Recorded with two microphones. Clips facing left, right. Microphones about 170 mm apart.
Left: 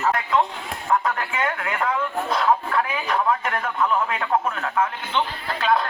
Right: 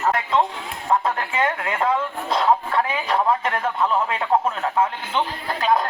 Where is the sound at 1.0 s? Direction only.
30° right (ahead or behind).